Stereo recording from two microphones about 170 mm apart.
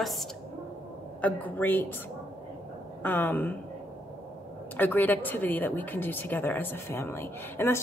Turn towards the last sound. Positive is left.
turn(degrees=15)  # may be behind; listen again after turning